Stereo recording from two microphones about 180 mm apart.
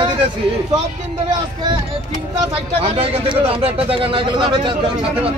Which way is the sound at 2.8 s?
35° right (ahead or behind).